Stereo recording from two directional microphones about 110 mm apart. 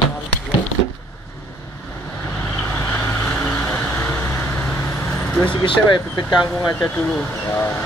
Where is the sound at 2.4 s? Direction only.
20° left (ahead or behind).